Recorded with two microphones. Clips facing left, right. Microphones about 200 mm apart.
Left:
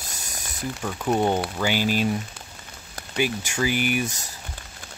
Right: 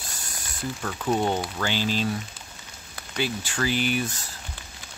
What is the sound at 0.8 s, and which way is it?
Speech, 15° left (ahead or behind).